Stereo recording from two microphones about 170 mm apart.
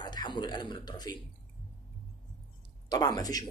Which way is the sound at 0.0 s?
25° left (ahead or behind).